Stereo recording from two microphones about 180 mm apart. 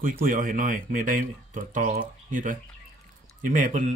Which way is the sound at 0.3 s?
50° right (ahead or behind).